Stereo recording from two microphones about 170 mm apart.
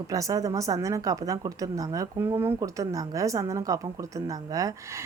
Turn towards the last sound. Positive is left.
turn(degrees=-20)  # may be behind; listen again after turning